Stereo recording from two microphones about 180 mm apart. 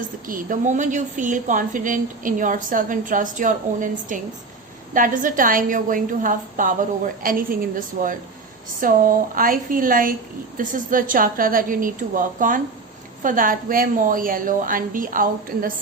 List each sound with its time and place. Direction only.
0.3 s a woman's voice: 45° right (ahead or behind)